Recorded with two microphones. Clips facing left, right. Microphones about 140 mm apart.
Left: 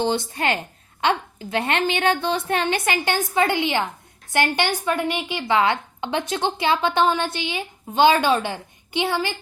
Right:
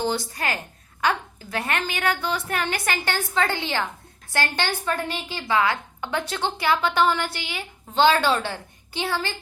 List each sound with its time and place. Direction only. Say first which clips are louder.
0.0 s a woman's voice: left 4 dB; 20° left (ahead or behind)